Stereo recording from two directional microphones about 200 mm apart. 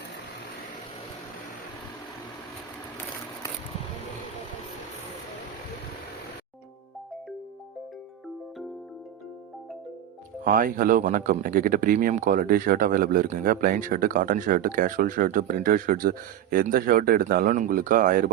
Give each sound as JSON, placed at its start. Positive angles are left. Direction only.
{"t": 10.4, "sound": "speech", "side_deg": -45}